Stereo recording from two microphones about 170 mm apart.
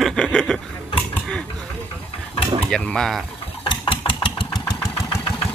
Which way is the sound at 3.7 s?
30° left (ahead or behind).